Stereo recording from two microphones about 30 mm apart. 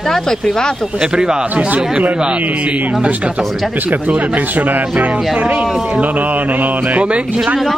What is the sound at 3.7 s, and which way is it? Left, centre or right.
Speech, right.